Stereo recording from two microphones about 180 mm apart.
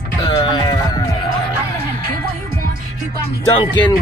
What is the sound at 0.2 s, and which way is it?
Music, 30° left (ahead or behind).